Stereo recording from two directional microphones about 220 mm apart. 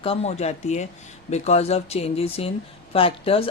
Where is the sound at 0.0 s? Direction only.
25° left (ahead or behind).